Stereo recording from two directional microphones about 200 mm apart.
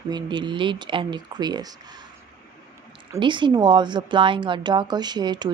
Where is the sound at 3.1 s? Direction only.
25° right (ahead or behind).